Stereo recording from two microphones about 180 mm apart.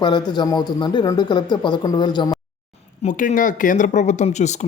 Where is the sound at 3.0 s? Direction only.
45° left (ahead or behind).